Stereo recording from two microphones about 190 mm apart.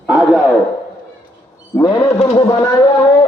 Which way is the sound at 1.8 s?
25° left (ahead or behind).